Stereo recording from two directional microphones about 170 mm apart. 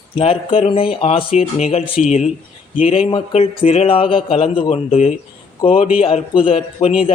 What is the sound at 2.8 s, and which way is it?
A man's voice, 30° left (ahead or behind).